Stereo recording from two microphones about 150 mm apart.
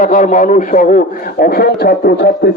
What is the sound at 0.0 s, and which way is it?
A man's voice, 60° left (ahead or behind).